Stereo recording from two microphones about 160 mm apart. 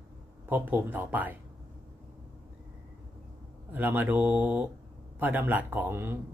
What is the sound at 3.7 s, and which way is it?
Speech, 10° right (ahead or behind).